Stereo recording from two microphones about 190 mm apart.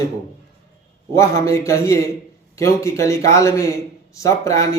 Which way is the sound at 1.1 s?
15° left (ahead or behind).